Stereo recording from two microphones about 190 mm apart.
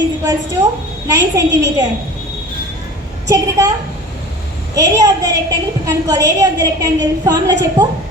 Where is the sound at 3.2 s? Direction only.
15° right (ahead or behind).